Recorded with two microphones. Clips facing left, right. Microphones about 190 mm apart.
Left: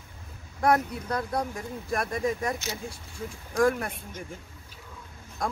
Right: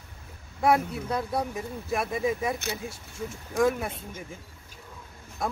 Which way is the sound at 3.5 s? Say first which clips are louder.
Even; 5° right (ahead or behind).